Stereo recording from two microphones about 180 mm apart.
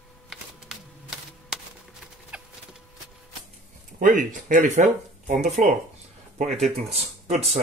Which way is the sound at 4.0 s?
45° right (ahead or behind).